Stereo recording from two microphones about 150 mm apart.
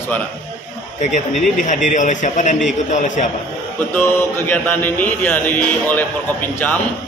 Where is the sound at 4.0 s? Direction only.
10° left (ahead or behind).